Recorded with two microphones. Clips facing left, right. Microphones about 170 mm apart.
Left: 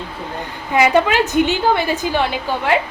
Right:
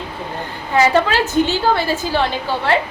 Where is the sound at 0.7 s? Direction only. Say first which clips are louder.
Left 1 dB; 15° left (ahead or behind).